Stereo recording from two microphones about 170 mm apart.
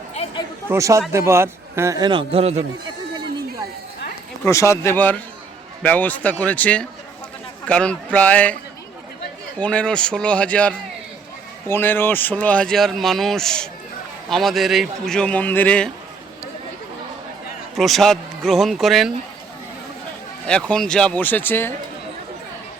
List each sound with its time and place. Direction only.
0.1 s a sound: 35° left (ahead or behind)
0.7 s a man's voice: 15° right (ahead or behind); by 2.6 s 35° right (ahead or behind)
4.4 s a man's voice: 15° left (ahead or behind)
9.6 s a man's voice: 5° left (ahead or behind)
17.7 s speech: centre (ahead or behind)
20.5 s a man's voice: 5° left (ahead or behind)